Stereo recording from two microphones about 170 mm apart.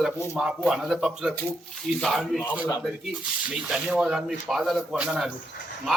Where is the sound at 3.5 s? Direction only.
5° right (ahead or behind).